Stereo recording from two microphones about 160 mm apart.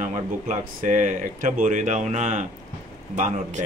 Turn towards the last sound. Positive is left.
turn(degrees=-45)  # may be behind; listen again after turning